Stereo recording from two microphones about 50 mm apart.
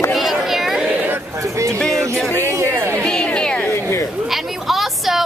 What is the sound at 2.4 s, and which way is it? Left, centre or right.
Speech, right.